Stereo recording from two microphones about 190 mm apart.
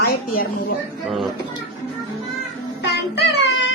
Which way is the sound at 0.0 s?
55° left (ahead or behind).